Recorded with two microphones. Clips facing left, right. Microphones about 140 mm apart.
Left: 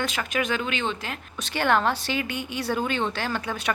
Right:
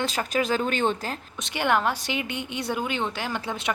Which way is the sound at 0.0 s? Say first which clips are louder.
Right 2 dB; 35° right (ahead or behind).